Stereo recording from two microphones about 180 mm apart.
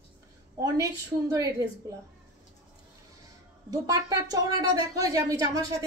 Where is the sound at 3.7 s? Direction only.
20° right (ahead or behind).